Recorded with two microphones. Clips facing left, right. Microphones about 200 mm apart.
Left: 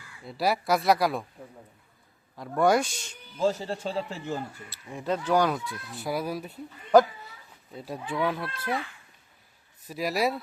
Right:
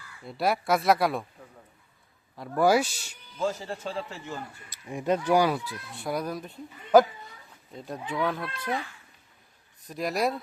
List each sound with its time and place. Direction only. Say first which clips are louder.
0.3 s speech: even; centre (ahead or behind)
2.3 s speech: even; centre (ahead or behind)
3.4 s a man's voice: left 3 dB; 30° left (ahead or behind)
4.7 s speech: right 4 dB; 15° right (ahead or behind); by 6.6 s 10° left (ahead or behind)
7.7 s speech: left 1 dB; 5° left (ahead or behind)
9.8 s speech: even; 5° left (ahead or behind)